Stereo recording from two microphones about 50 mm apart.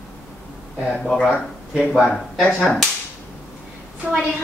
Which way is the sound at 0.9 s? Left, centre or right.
Centre.